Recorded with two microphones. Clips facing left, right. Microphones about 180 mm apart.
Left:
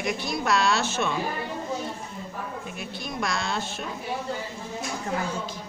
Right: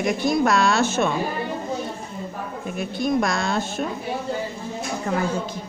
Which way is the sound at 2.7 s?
50° right (ahead or behind).